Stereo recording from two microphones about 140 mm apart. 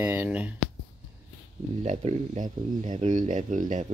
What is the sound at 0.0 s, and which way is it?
Speech, 15° right (ahead or behind).